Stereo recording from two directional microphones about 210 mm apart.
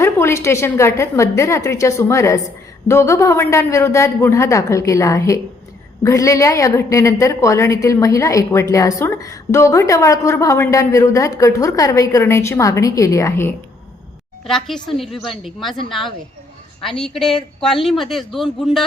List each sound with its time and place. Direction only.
0.0 s a woman's voice: 10° left (ahead or behind)
14.4 s speech: centre (ahead or behind)